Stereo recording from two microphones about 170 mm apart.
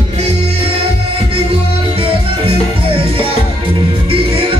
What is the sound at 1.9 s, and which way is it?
Music, 35° right (ahead or behind).